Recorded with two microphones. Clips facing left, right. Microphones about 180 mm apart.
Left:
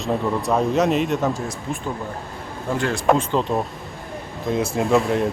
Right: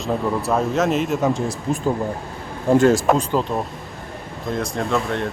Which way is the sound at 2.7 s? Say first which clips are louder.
Right 10 dB; 45° right (ahead or behind).